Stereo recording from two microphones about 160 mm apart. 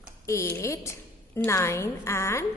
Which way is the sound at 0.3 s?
20° left (ahead or behind).